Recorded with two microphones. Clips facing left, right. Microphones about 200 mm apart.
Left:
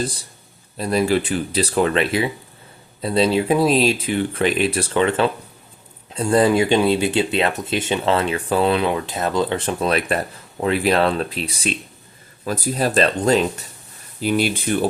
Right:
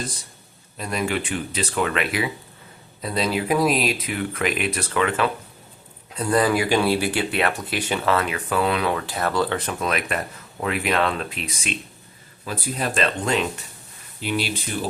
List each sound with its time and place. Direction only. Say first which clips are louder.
0.8 s speech: left 7 dB; 35° left (ahead or behind); by 14.8 s 50° left (ahead or behind)